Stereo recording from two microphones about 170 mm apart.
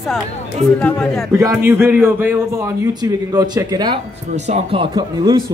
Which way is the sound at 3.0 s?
25° right (ahead or behind).